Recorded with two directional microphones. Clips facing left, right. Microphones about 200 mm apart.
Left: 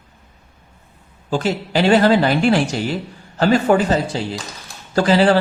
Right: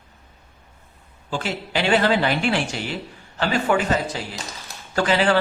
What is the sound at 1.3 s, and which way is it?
Speech, 40° left (ahead or behind).